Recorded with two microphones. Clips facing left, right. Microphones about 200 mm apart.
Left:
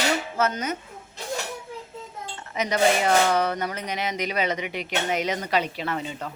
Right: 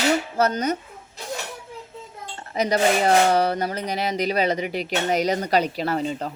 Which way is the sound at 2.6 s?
35° right (ahead or behind).